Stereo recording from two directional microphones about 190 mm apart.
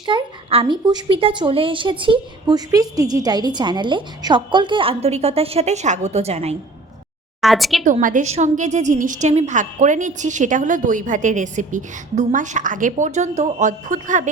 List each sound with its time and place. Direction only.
0.0 s a woman's voice: 25° right (ahead or behind)
7.4 s a woman's voice: centre (ahead or behind)
7.9 s a woman's voice: 40° right (ahead or behind)